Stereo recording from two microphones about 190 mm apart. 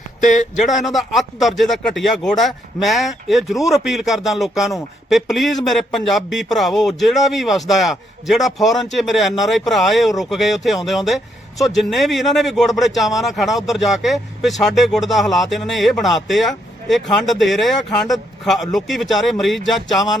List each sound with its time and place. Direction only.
0.2 s speech: 40° left (ahead or behind)
0.9 s speech: centre (ahead or behind)